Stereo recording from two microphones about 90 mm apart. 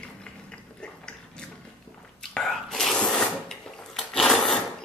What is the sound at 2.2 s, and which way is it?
Whispering, 5° left (ahead or behind).